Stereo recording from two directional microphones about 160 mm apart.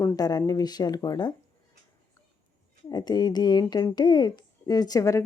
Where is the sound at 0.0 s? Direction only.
25° left (ahead or behind).